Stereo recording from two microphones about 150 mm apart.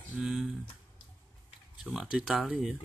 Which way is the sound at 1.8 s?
5° right (ahead or behind).